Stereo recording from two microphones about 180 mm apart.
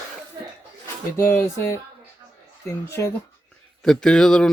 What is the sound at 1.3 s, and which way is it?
Speech, 15° left (ahead or behind).